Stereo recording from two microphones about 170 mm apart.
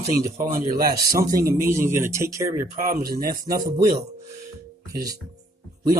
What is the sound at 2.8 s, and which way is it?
Speech, 55° right (ahead or behind).